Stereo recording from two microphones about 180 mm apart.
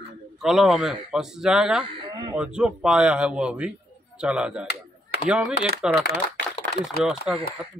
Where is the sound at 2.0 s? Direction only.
25° right (ahead or behind).